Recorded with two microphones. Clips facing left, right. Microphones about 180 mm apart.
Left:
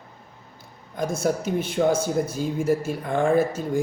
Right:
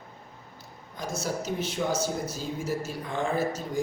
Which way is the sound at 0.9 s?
55° left (ahead or behind).